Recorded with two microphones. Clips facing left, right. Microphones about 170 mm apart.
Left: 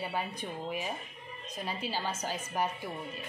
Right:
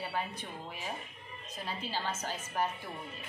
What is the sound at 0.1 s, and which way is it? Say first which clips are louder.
A woman's voice: left 2 dB; 15° left (ahead or behind).